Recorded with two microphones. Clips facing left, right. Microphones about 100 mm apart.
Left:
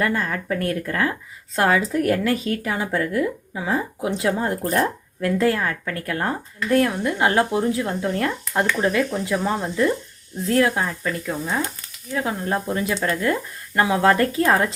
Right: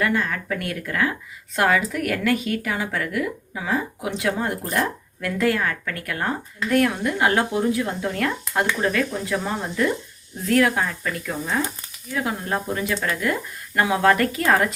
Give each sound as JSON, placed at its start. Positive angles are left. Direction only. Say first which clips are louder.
{"t": 0.0, "sound": "speech", "louder": "even", "side_deg": 30}
{"t": 10.4, "sound": "speech", "louder": "even", "side_deg": 25}